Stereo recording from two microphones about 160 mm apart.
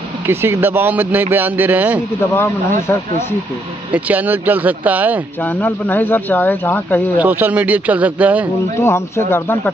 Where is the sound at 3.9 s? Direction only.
10° right (ahead or behind).